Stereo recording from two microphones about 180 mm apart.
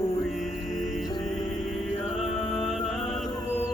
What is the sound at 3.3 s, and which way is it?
Music, 15° left (ahead or behind).